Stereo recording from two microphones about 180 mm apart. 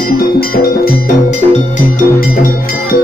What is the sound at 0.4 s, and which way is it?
Music, 55° left (ahead or behind).